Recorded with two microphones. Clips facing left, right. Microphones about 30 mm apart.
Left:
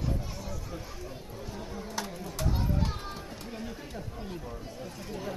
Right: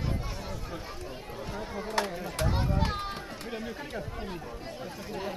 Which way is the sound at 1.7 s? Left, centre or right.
Right.